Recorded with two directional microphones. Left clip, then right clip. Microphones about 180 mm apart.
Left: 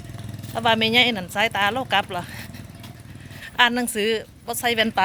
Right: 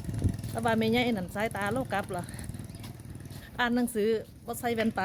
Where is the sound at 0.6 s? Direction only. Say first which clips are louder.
Left 10 dB; 15° right (ahead or behind).